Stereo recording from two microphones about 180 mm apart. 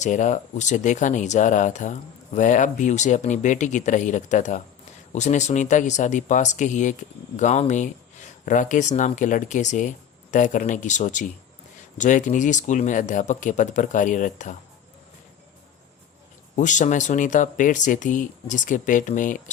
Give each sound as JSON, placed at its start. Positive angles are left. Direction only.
{"t": 0.0, "sound": "speech", "side_deg": 45}
{"t": 16.6, "sound": "speech", "side_deg": 45}